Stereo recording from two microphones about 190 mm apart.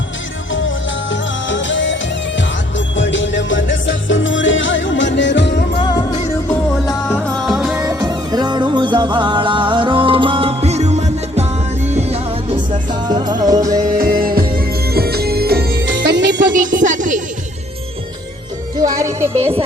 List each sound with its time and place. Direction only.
1.1 s music: 75° left (ahead or behind)
5.8 s music: 20° left (ahead or behind)
7.1 s music: centre (ahead or behind)
7.9 s music: 20° right (ahead or behind)
14.0 s music: 50° right (ahead or behind); by 16.5 s 65° right (ahead or behind)
16.5 s music: 45° right (ahead or behind)
18.8 s music: 15° right (ahead or behind)
19.4 s speech: 30° right (ahead or behind)